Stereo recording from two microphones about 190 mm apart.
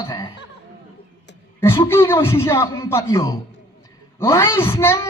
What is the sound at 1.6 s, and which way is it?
A man's voice, 10° left (ahead or behind).